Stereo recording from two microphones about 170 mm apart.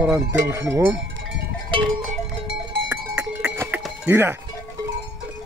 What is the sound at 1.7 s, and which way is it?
Cowbell, 30° right (ahead or behind).